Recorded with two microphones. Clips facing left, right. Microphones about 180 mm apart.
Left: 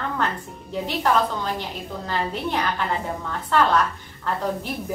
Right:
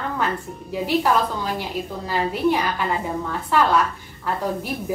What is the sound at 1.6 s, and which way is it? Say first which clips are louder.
A woman's voice: right 3 dB; 10° right (ahead or behind).